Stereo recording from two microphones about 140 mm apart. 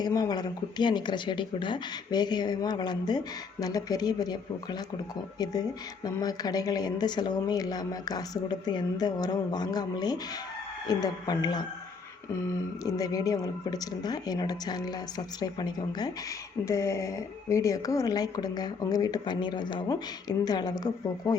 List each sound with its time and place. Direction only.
0.0 s speech: 30° left (ahead or behind)
6.1 s speech: 25° left (ahead or behind)
16.6 s speech: 20° left (ahead or behind)